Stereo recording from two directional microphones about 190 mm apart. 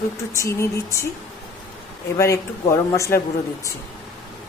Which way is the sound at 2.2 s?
15° left (ahead or behind).